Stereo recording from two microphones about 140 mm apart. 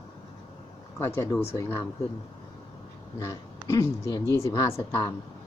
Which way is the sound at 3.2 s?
20° left (ahead or behind).